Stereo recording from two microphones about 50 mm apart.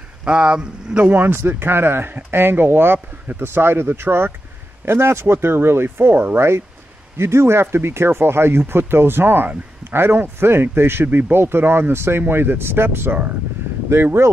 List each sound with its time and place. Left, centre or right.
0.2 s speech: right
1.1 s speech: right
7.2 s speech: right
11.1 s speech: right
12.2 s speech: right